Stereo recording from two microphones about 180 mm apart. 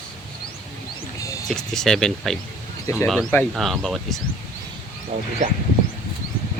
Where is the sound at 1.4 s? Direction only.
5° left (ahead or behind).